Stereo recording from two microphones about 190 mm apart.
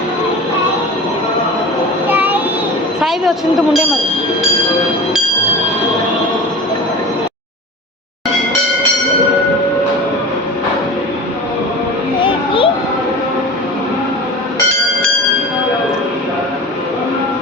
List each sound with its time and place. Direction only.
2.0 s child singing: 10° right (ahead or behind)
3.0 s a woman's voice: centre (ahead or behind)
12.2 s a sound: 25° left (ahead or behind)